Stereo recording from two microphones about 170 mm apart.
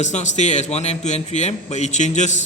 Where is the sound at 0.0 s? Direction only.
45° left (ahead or behind).